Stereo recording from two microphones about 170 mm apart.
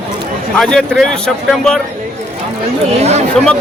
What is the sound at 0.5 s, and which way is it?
A man's voice, 5° left (ahead or behind).